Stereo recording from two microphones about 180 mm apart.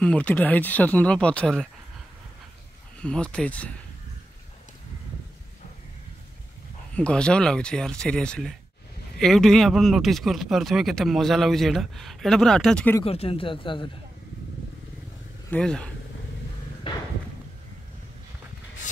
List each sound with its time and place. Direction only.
0.0 s speech: 5° left (ahead or behind)
3.0 s speech: 5° left (ahead or behind)
7.0 s speech: 5° left (ahead or behind)
13.0 s speech: 30° left (ahead or behind)
15.5 s speech: 5° left (ahead or behind)
16.9 s a sound: 30° left (ahead or behind)